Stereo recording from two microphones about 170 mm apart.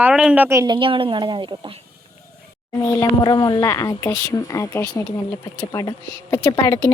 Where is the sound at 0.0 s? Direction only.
5° right (ahead or behind); by 1.7 s 30° right (ahead or behind).